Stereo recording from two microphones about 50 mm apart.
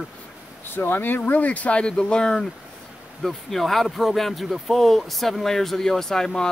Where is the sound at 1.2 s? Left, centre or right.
Left.